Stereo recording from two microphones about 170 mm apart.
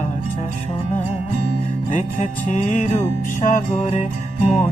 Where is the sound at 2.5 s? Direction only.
45° left (ahead or behind).